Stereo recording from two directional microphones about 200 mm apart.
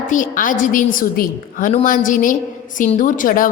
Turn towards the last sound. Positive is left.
turn(degrees=45)  # may be behind; listen again after turning